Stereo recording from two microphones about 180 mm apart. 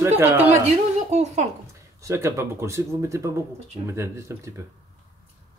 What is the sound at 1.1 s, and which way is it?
Speech, 40° right (ahead or behind).